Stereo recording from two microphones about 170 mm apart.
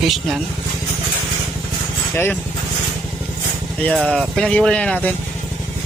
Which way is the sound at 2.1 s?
10° left (ahead or behind).